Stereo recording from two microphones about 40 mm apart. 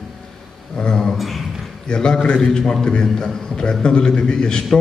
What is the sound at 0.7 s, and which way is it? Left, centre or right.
Speech, centre.